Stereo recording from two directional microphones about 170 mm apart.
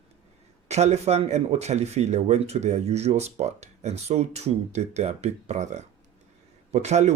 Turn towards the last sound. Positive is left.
turn(degrees=-40)  # may be behind; listen again after turning